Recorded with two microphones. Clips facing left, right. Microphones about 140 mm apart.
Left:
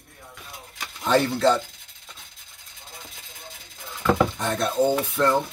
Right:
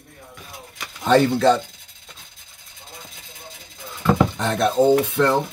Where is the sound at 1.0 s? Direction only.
65° right (ahead or behind).